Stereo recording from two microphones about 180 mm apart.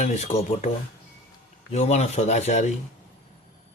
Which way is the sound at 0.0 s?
40° left (ahead or behind).